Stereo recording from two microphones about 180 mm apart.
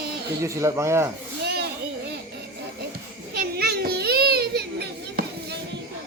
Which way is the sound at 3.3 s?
60° right (ahead or behind).